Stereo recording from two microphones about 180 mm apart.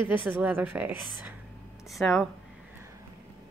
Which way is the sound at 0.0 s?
10° right (ahead or behind).